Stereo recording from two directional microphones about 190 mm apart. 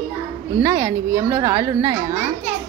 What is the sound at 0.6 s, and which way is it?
A woman's voice, 15° right (ahead or behind).